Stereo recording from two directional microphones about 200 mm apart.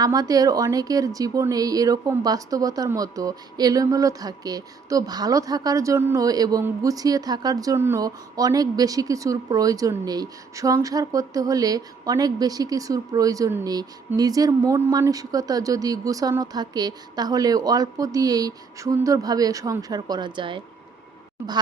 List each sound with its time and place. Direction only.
0.0 s a woman's voice: 20° right (ahead or behind)